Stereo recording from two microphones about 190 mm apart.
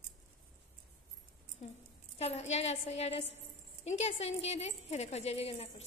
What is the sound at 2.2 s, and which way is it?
Speech, 35° left (ahead or behind).